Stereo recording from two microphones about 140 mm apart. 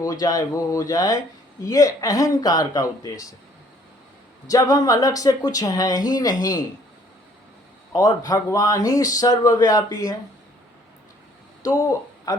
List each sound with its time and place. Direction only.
0.0 s speech: 25° left (ahead or behind)
4.4 s speech: 25° left (ahead or behind)
7.9 s speech: 25° left (ahead or behind)
11.8 s speech: 25° left (ahead or behind)